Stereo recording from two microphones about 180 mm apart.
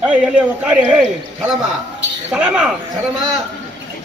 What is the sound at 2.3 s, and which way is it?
Speech, 5° right (ahead or behind).